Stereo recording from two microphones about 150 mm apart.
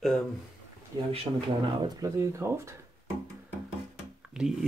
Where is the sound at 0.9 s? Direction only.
25° right (ahead or behind).